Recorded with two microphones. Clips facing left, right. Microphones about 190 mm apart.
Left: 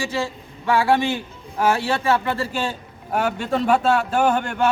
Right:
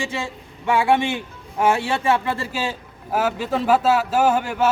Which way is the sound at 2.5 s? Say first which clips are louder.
Left 1 dB; 5° right (ahead or behind).